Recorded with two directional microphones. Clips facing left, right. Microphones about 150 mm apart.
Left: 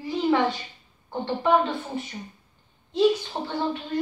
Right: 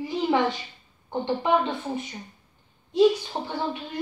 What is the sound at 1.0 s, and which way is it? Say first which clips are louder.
A woman's voice: left 1 dB; 20° right (ahead or behind).